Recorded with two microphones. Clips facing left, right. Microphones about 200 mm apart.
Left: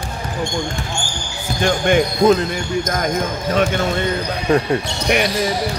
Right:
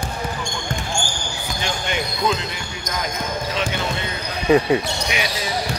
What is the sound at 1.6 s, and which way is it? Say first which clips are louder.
Speech: left 11 dB; 50° left (ahead or behind).